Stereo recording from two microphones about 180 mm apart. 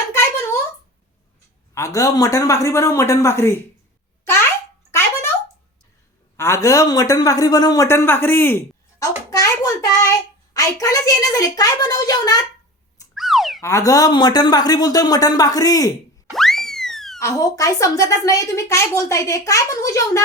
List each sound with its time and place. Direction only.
1.7 s a woman's voice: 20° left (ahead or behind)
4.9 s a sound: 15° left (ahead or behind)
6.3 s a man's voice: 15° left (ahead or behind)
13.1 s boing: centre (ahead or behind)
13.6 s a man's voice: 15° left (ahead or behind)
16.3 s music: centre (ahead or behind)
17.2 s a woman's voice: 15° left (ahead or behind)